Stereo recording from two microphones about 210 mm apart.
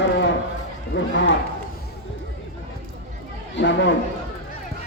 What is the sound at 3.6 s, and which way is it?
Speech, 60° left (ahead or behind).